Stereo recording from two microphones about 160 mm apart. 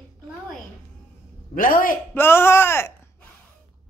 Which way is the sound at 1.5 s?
60° left (ahead or behind).